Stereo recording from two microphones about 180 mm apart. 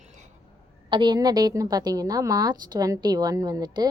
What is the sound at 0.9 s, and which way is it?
A woman's voice, 25° right (ahead or behind).